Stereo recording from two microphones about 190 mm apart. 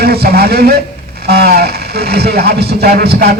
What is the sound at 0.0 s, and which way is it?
Speech, 55° right (ahead or behind).